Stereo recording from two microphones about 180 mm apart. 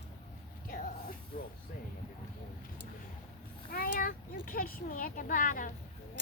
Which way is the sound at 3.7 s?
50° left (ahead or behind).